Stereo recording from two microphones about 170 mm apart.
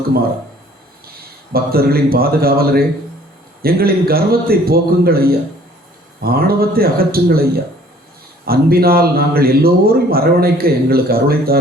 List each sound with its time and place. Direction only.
1.5 s a man's voice: 65° right (ahead or behind)
8.4 s a man's voice: 65° right (ahead or behind)